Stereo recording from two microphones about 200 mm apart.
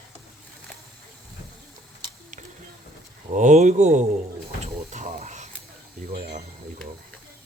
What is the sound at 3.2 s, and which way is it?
Speech, 40° right (ahead or behind).